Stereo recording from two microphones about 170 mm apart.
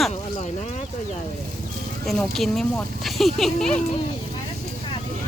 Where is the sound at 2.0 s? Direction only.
Centre (ahead or behind).